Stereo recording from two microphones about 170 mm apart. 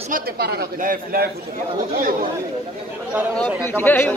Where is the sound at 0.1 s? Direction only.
65° right (ahead or behind).